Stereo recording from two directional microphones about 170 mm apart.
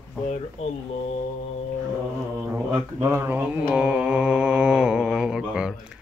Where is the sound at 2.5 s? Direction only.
5° right (ahead or behind).